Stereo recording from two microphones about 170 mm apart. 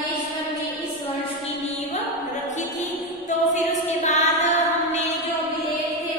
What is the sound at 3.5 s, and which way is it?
Music, 45° left (ahead or behind).